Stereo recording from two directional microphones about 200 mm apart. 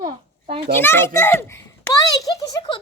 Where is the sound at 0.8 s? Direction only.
10° left (ahead or behind).